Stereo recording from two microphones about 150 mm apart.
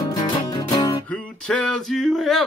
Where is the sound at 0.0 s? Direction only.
25° left (ahead or behind).